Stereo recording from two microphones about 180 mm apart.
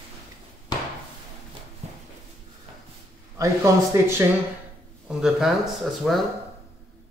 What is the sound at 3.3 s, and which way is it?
Speech, 15° right (ahead or behind).